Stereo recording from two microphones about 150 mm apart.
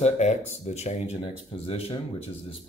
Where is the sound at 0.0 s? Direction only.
50° left (ahead or behind).